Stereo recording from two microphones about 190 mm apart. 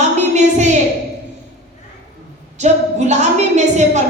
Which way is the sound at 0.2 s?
35° right (ahead or behind).